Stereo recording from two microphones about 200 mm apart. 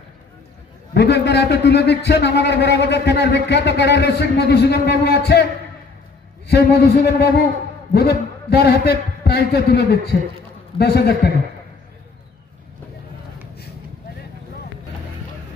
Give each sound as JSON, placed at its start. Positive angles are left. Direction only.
{"t": 0.9, "sound": "a man's voice", "side_deg": 55}
{"t": 6.5, "sound": "a man's voice", "side_deg": 55}